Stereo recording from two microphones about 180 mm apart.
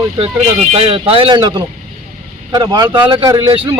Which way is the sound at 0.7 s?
30° right (ahead or behind).